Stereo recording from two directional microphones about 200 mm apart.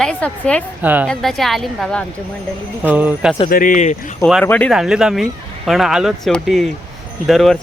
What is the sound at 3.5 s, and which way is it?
Speech, 45° left (ahead or behind).